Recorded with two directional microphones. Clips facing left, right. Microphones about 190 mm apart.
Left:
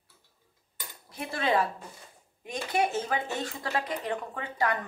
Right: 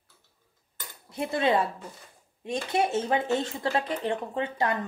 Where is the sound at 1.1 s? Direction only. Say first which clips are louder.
Right 3 dB; 25° right (ahead or behind).